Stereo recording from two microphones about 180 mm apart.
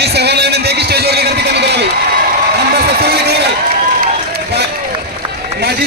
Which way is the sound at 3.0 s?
60° right (ahead or behind).